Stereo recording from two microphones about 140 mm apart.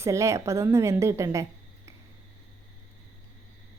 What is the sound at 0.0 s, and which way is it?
A woman's voice, 20° right (ahead or behind).